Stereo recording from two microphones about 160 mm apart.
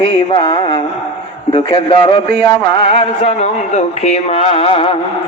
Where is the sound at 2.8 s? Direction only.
45° left (ahead or behind).